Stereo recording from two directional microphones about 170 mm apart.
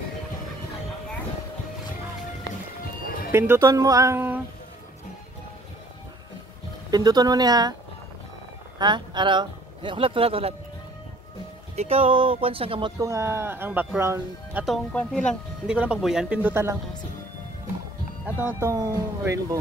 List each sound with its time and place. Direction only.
3.3 s speech: 15° right (ahead or behind)
6.9 s speech: 25° right (ahead or behind)
8.7 s a man's voice: 25° right (ahead or behind)
11.7 s speech: 35° right (ahead or behind)
13.0 s speech: 15° right (ahead or behind)
14.6 s speech: centre (ahead or behind)
18.5 s speech: 15° right (ahead or behind)